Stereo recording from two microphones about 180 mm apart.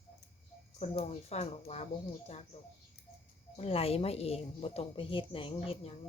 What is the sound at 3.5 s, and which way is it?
A woman's voice, 35° left (ahead or behind).